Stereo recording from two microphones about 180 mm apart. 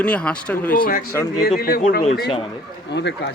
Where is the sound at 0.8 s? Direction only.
55° left (ahead or behind).